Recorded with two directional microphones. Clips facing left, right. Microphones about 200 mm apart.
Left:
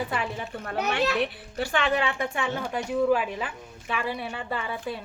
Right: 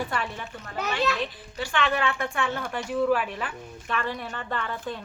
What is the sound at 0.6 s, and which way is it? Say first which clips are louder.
A child's voice: left 1 dB; 65° left (ahead or behind).